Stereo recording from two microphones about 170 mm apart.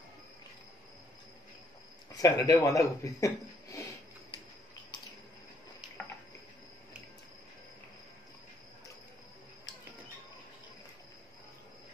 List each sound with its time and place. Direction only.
2.1 s speech: 20° left (ahead or behind)